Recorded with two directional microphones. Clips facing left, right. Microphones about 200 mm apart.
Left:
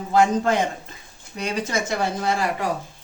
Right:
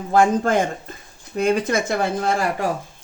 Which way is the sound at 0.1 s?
50° right (ahead or behind).